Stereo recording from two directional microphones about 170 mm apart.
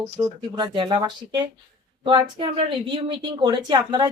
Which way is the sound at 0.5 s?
25° right (ahead or behind).